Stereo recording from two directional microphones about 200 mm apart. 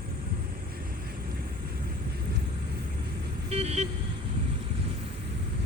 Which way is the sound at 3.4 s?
30° right (ahead or behind).